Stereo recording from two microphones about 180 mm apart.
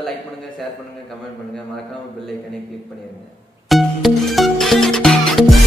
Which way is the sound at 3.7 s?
Centre (ahead or behind).